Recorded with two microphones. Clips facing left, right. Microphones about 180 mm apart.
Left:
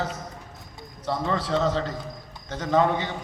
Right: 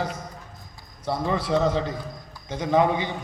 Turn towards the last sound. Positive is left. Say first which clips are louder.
# right 1 dB
turn(degrees=-10)  # may be behind; listen again after turning